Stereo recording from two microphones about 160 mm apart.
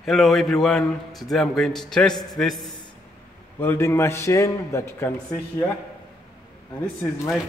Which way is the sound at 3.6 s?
15° left (ahead or behind).